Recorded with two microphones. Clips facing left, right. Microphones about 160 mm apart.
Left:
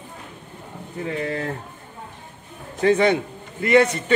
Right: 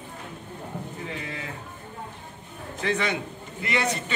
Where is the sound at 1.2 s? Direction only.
60° left (ahead or behind).